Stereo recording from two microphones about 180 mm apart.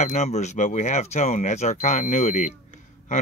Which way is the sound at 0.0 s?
40° left (ahead or behind).